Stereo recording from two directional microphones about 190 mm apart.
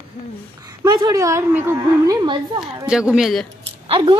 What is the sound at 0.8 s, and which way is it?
A woman's voice, 20° right (ahead or behind).